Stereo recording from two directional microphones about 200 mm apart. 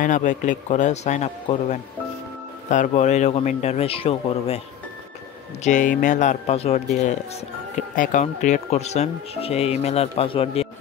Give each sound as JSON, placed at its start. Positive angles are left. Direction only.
{"t": 0.0, "sound": "speech", "side_deg": 40}
{"t": 5.6, "sound": "speech", "side_deg": 40}